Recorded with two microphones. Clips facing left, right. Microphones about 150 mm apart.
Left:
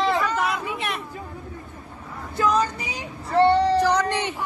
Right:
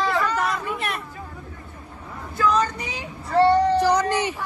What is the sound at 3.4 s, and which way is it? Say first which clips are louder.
Child singing: right 1 dB; 30° left (ahead or behind).